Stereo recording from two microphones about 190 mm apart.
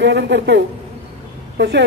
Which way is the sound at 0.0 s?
65° right (ahead or behind).